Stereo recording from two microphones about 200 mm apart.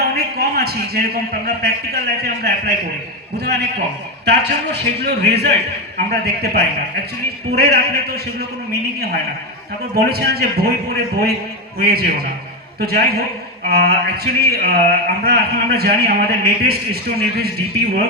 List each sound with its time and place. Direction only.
0.0 s a man's voice: 50° right (ahead or behind)